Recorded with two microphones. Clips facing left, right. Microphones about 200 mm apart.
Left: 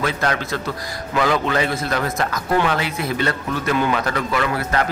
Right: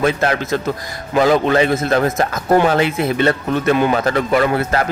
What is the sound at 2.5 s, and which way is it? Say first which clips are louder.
Speech: right 6 dB; 40° right (ahead or behind).